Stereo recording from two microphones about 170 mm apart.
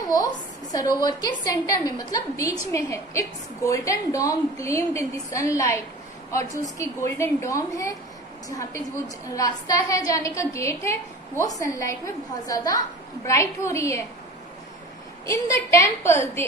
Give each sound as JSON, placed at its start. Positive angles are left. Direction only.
{"t": 0.1, "sound": "a woman's voice", "side_deg": 20}
{"t": 15.2, "sound": "a woman's voice", "side_deg": 20}